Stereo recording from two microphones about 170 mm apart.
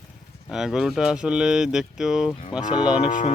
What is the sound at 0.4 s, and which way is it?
Speech, 5° right (ahead or behind).